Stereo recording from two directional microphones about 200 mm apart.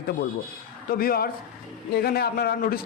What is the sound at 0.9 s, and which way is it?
A man's voice, 50° left (ahead or behind).